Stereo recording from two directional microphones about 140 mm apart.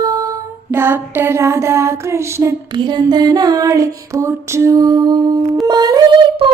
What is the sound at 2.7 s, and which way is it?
Child singing, 30° right (ahead or behind).